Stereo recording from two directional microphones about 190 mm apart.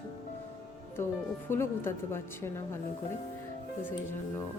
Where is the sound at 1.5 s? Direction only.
10° left (ahead or behind).